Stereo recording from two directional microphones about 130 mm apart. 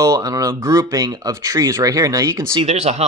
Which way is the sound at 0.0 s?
25° right (ahead or behind).